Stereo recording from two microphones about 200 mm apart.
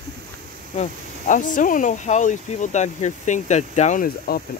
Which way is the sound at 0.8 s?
40° left (ahead or behind).